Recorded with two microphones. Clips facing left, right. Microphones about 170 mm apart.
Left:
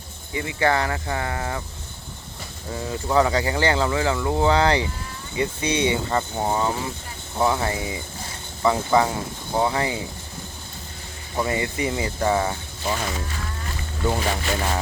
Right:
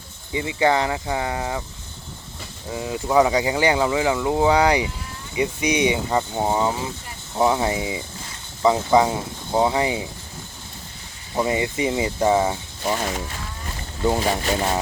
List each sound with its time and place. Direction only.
0.3 s speech: 20° right (ahead or behind)
2.7 s speech: 10° right (ahead or behind)
11.3 s speech: 20° right (ahead or behind)